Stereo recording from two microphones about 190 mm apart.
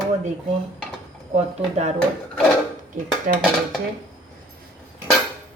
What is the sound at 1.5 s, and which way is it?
Speech, 35° right (ahead or behind).